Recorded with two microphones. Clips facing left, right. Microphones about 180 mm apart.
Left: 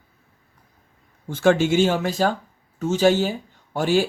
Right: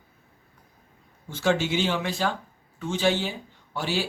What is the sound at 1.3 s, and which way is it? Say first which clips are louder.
Speech: left 7 dB; 50° left (ahead or behind).